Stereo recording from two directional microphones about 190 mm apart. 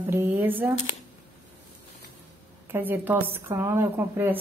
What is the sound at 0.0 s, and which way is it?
Speech, 10° right (ahead or behind).